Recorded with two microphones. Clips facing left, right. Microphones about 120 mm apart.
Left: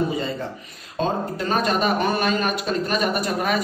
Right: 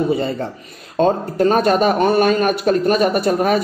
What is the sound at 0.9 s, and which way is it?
A man's voice, 45° right (ahead or behind).